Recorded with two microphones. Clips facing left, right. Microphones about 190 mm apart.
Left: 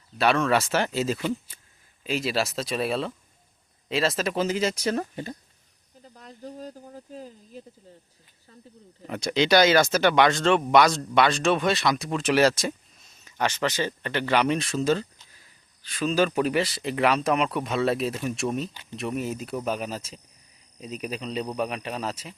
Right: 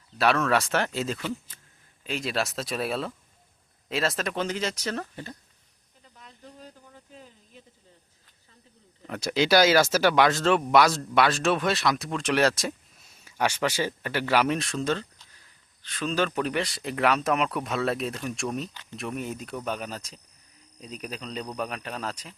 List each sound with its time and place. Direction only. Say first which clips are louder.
0.2 s speech: left 1 dB; centre (ahead or behind); by 5.4 s 15° left (ahead or behind)
6.0 s a sound: left 8 dB; 40° left (ahead or behind)
9.0 s speech: left 1 dB; centre (ahead or behind)